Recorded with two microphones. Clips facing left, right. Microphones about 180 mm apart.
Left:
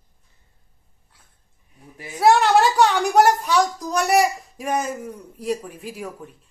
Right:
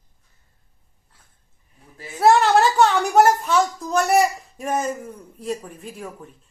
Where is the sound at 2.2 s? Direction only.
Centre (ahead or behind).